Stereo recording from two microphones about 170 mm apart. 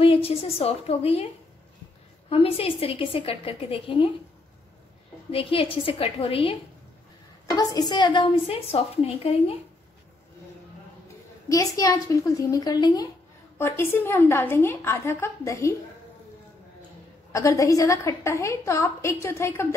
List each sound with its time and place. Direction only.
0.0 s a woman's voice: 35° left (ahead or behind)
5.3 s a woman's voice: 35° left (ahead or behind)
7.4 s a woman's voice: 25° left (ahead or behind)
11.4 s a woman's voice: 20° left (ahead or behind)
17.3 s a woman's voice: 20° left (ahead or behind)